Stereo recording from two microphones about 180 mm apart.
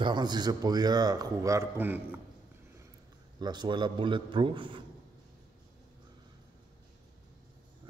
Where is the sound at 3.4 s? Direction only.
25° right (ahead or behind).